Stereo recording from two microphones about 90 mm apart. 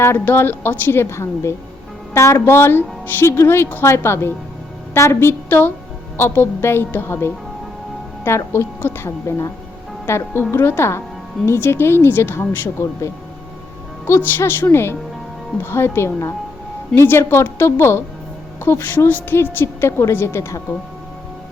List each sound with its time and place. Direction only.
0.0 s a woman's voice: 25° left (ahead or behind)
8.5 s a woman's voice: 30° left (ahead or behind)
14.3 s a woman's voice: 25° left (ahead or behind)